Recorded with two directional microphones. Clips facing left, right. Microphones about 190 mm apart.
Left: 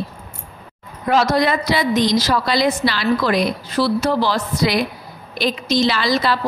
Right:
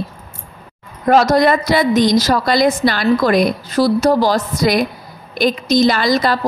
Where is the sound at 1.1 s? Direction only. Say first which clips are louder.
Right 5 dB; 45° right (ahead or behind).